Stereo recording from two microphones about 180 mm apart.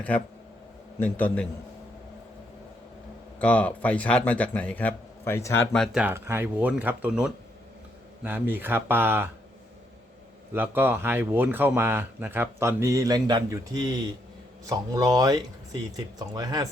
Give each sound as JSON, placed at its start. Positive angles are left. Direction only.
{"t": 0.9, "sound": "speech", "side_deg": 10}
{"t": 3.4, "sound": "speech", "side_deg": 10}
{"t": 5.7, "sound": "speech", "side_deg": 0}
{"t": 10.5, "sound": "speech", "side_deg": -10}